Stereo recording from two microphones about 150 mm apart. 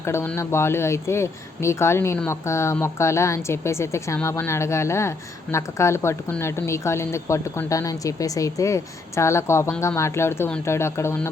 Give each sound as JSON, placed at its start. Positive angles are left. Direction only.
{"t": 0.0, "sound": "a woman's voice", "side_deg": 15}